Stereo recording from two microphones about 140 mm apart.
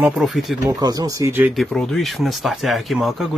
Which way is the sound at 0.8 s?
25° right (ahead or behind).